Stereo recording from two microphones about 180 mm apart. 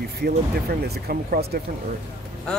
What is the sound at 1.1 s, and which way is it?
Speech, 60° right (ahead or behind).